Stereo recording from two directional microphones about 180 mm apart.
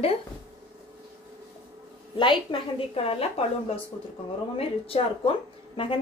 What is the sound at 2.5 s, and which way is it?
Speech, 30° left (ahead or behind).